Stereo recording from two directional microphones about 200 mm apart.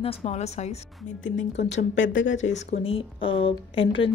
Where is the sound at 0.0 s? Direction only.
30° left (ahead or behind).